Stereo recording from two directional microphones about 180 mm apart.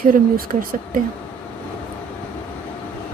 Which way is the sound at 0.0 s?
50° right (ahead or behind).